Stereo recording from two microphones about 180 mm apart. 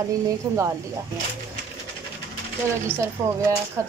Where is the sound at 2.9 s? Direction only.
15° right (ahead or behind).